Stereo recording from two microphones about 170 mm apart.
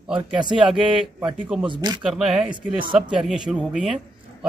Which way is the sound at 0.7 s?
Centre (ahead or behind).